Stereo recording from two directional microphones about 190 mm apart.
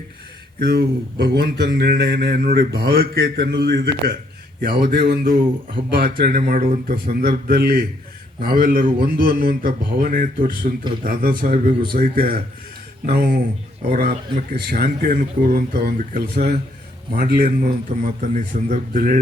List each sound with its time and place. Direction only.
0.6 s a man's voice: 55° right (ahead or behind)
4.6 s a man's voice: 50° right (ahead or behind)
11.7 s speech: 25° right (ahead or behind)
11.9 s a man's voice: 50° right (ahead or behind)